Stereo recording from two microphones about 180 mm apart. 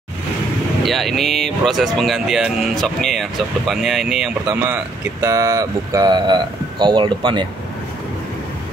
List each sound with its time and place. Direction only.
0.8 s speech: centre (ahead or behind)
5.2 s speech: 20° right (ahead or behind)